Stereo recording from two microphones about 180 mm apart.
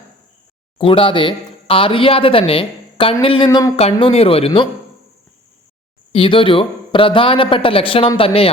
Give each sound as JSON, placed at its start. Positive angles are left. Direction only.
{"t": 0.8, "sound": "speech", "side_deg": 30}
{"t": 3.9, "sound": "speech", "side_deg": 30}
{"t": 6.1, "sound": "a man's voice", "side_deg": 30}